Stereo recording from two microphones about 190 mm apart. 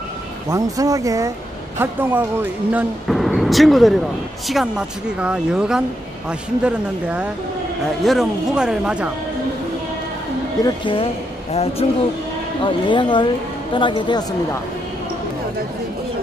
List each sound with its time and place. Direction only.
0.5 s speech: 20° right (ahead or behind)
10.6 s speech: 25° left (ahead or behind)